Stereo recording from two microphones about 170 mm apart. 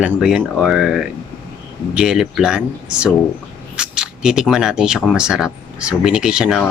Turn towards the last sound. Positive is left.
turn(degrees=-5)  # may be behind; listen again after turning